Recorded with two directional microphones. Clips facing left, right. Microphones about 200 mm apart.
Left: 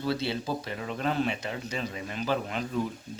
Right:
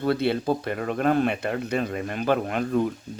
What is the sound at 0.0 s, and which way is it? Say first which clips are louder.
Speech: right 7 dB; 55° right (ahead or behind).